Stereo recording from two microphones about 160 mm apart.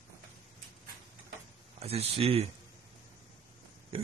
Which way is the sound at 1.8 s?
40° right (ahead or behind).